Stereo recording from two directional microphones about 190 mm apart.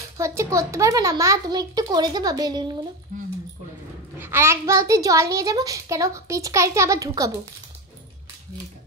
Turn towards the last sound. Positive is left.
turn(degrees=-20)  # may be behind; listen again after turning